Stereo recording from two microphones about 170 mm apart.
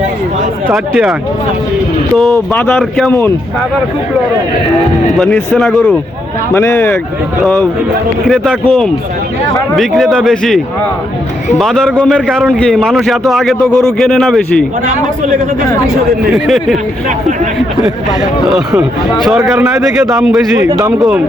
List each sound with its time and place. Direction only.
0.7 s a man's voice: centre (ahead or behind)
2.5 s speech: 5° left (ahead or behind)
5.1 s a man's voice: 5° left (ahead or behind)
16.3 s a man's voice: centre (ahead or behind)
18.8 s a man's voice: centre (ahead or behind)
20.6 s speech: 20° right (ahead or behind)